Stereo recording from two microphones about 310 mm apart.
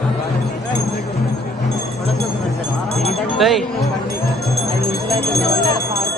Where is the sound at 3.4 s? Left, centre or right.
Centre.